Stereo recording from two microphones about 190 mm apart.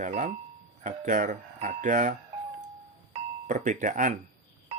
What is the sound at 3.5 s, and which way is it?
Speech, 40° right (ahead or behind).